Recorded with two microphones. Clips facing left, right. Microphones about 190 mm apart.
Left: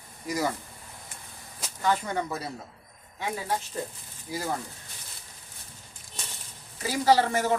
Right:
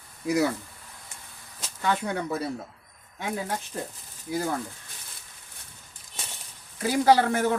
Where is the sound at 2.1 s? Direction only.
60° right (ahead or behind).